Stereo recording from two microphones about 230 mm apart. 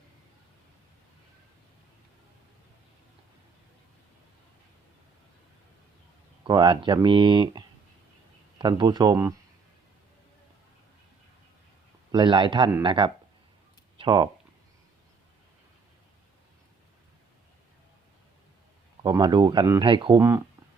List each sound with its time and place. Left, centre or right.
6.4 s speech: centre
12.1 s speech: right
19.0 s speech: centre